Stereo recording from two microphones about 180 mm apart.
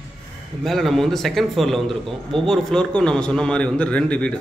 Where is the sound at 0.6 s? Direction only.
Centre (ahead or behind).